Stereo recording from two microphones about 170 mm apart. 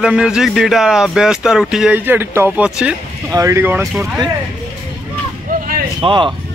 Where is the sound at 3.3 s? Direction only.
20° right (ahead or behind).